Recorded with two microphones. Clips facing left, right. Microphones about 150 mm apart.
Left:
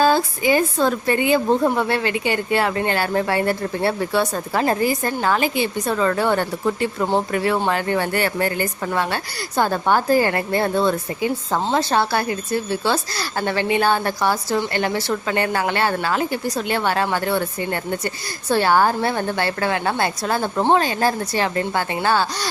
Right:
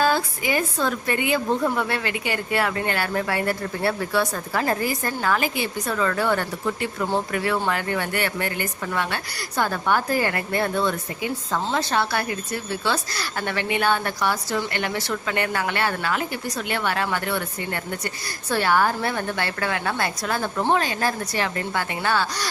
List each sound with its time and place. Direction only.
0.0 s a woman's voice: 30° left (ahead or behind)